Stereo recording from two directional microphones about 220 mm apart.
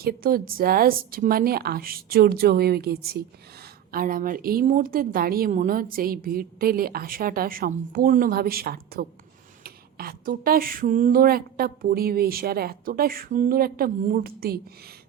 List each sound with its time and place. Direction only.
0.0 s a woman's voice: 40° right (ahead or behind)